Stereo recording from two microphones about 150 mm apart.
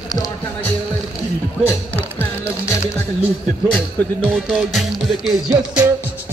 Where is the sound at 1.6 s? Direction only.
10° left (ahead or behind).